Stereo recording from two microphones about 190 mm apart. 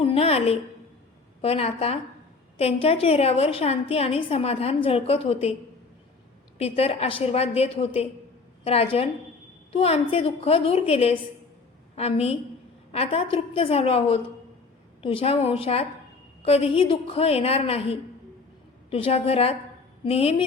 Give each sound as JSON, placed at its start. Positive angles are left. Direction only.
{"t": 0.0, "sound": "a woman's voice", "side_deg": 30}
{"t": 6.6, "sound": "a woman's voice", "side_deg": 30}